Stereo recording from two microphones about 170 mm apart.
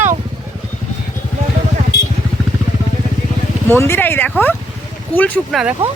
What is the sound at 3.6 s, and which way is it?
Speech, 15° left (ahead or behind).